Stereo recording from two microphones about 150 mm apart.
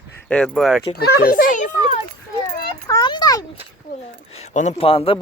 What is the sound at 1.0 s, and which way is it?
Speech, 80° left.